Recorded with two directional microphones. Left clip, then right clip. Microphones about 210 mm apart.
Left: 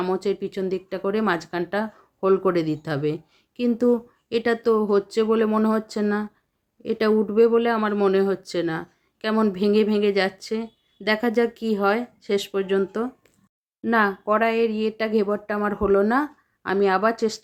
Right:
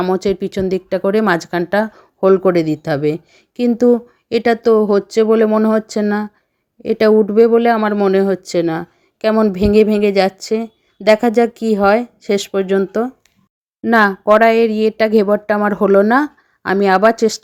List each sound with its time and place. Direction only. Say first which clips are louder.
0.0 s speech: right 8 dB; 35° right (ahead or behind)